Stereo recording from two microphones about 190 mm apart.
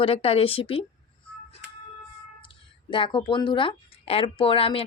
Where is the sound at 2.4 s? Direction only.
25° left (ahead or behind).